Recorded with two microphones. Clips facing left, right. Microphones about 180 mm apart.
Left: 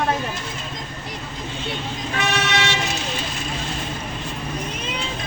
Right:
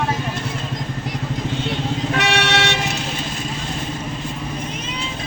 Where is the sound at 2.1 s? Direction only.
70° right (ahead or behind).